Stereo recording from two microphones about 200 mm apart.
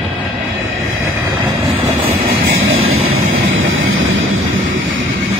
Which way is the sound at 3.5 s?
80° right.